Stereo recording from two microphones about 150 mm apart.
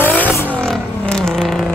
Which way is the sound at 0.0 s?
15° left (ahead or behind).